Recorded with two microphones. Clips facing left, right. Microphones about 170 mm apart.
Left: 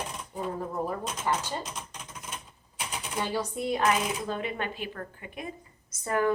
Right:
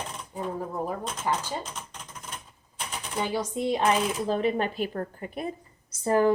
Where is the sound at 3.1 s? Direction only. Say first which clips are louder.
Right 2 dB; 15° right (ahead or behind); by 6.3 s 30° right (ahead or behind).